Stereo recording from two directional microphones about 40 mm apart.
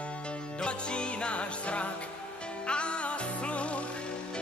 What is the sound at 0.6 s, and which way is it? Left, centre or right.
Music, left.